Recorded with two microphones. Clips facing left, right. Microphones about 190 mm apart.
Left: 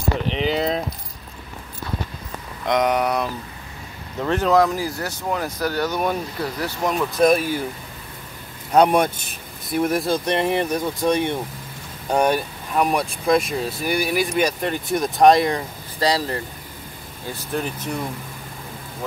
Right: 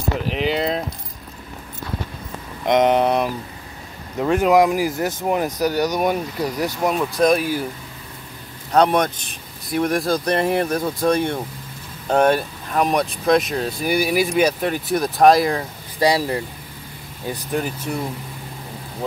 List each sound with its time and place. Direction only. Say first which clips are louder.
0.3 s speech: right 1 dB; centre (ahead or behind)
2.6 s speech: right 4 dB; 25° right (ahead or behind)
4.2 s speech: right 2 dB; 10° right (ahead or behind)
7.2 s speech: left 1 dB; centre (ahead or behind)
8.7 s speech: left 1 dB; 10° left (ahead or behind)
16.0 s speech: right 3 dB; 10° right (ahead or behind)